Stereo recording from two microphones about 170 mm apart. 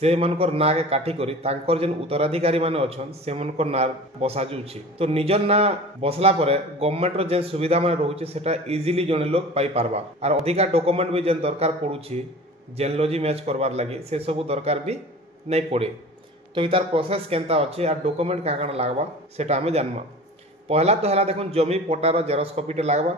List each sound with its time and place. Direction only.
0.0 s a man's voice: 35° right (ahead or behind)